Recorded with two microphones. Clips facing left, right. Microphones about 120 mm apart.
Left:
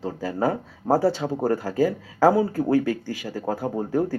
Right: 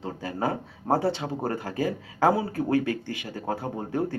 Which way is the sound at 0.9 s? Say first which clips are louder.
Left 4 dB; 20° right (ahead or behind).